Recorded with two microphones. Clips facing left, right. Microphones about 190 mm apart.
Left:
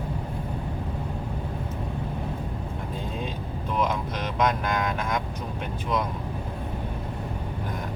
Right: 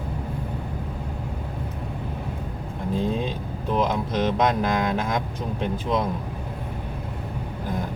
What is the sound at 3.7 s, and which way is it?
Speech, 30° right (ahead or behind).